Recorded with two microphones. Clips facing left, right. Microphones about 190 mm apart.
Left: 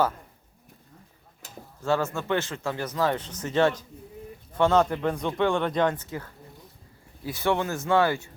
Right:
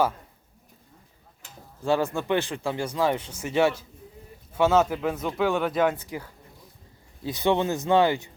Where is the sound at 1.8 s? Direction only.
15° right (ahead or behind).